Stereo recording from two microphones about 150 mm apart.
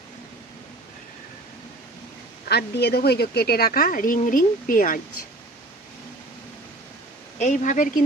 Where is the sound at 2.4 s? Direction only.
90° left; by 5.0 s 65° left (ahead or behind).